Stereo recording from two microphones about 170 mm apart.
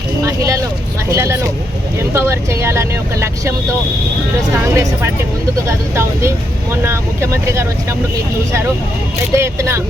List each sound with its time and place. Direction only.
0.3 s vehicle: 20° right (ahead or behind)
1.1 s speech: 15° right (ahead or behind)
4.6 s speech: 15° right (ahead or behind)
9.3 s speech: 15° right (ahead or behind)